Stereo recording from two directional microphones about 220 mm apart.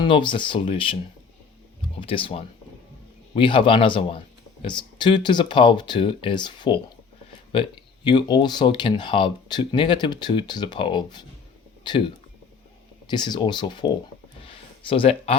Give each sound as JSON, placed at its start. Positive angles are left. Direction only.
{"t": 0.0, "sound": "speech", "side_deg": 20}
{"t": 2.0, "sound": "speech", "side_deg": 25}
{"t": 13.1, "sound": "speech", "side_deg": 20}
{"t": 14.4, "sound": "a sound", "side_deg": 25}